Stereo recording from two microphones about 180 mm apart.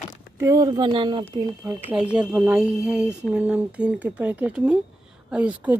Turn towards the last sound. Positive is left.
turn(degrees=-10)  # may be behind; listen again after turning